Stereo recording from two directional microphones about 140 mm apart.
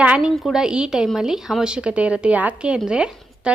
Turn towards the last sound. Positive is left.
turn(degrees=-5)  # may be behind; listen again after turning